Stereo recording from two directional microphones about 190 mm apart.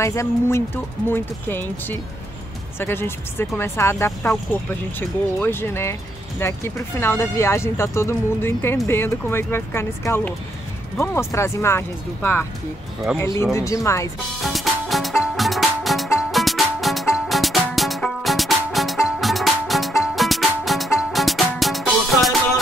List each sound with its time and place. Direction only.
0.0 s speech: 15° left (ahead or behind)
14.4 s music: centre (ahead or behind)